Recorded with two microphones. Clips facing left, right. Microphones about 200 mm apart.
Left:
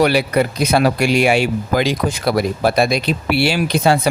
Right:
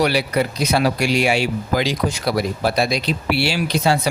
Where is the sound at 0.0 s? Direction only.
55° left (ahead or behind).